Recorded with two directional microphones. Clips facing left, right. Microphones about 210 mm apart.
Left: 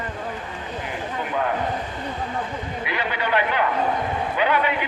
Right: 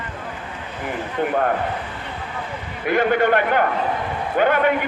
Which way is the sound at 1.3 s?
50° right (ahead or behind).